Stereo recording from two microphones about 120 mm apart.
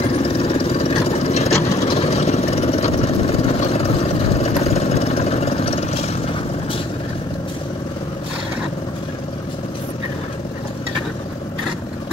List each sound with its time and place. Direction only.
0.2 s vehicle: 55° left (ahead or behind)